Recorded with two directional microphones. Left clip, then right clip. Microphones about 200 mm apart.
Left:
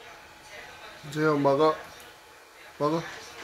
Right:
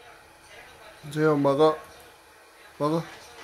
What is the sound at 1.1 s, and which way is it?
Speech, 20° right (ahead or behind).